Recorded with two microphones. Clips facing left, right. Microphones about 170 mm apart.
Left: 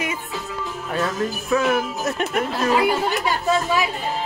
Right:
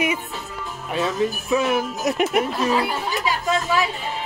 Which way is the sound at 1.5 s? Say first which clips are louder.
Left 2 dB; 20° right (ahead or behind).